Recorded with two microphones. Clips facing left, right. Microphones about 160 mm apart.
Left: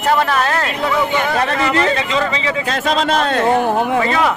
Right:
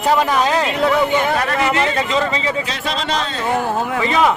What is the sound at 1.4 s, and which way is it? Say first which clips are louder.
Speech: left 1 dB; 35° left (ahead or behind).